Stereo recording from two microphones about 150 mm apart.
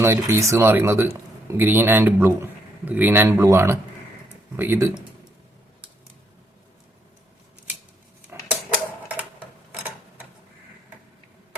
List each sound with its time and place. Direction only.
0.0 s a man's voice: 15° right (ahead or behind)